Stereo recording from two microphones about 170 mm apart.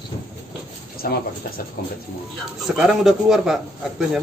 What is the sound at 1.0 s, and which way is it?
Speech, 60° left (ahead or behind).